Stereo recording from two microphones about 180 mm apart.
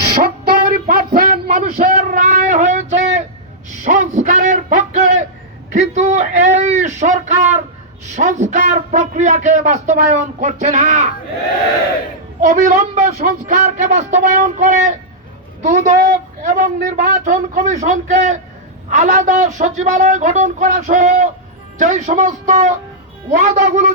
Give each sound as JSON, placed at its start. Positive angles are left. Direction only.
{"t": 0.2, "sound": "a sound", "side_deg": -55}
{"t": 3.8, "sound": "a man's voice", "side_deg": -45}
{"t": 12.4, "sound": "a man's voice", "side_deg": -45}